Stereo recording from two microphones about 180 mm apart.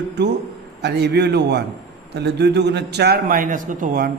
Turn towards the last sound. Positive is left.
turn(degrees=-50)  # may be behind; listen again after turning